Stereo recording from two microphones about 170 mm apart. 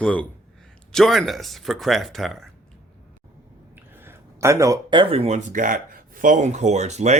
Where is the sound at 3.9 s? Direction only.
15° right (ahead or behind); by 7.2 s 40° right (ahead or behind).